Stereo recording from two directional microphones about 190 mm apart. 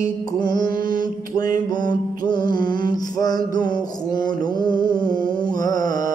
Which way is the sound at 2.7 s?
20° left (ahead or behind).